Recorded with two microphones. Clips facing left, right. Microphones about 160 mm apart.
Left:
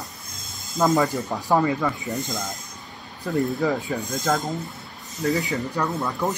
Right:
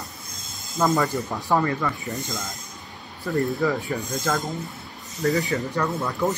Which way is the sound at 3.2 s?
20° left (ahead or behind).